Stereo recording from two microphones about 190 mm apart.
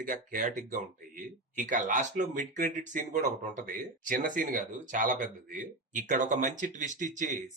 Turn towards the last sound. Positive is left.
turn(degrees=-40)  # may be behind; listen again after turning